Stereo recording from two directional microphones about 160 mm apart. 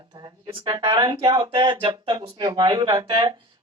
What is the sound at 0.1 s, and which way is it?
Speech, 25° right (ahead or behind).